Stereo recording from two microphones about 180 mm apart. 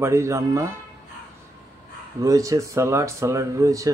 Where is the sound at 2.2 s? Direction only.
20° right (ahead or behind).